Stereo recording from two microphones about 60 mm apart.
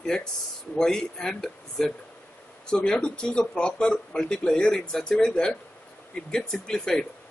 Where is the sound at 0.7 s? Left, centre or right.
Centre.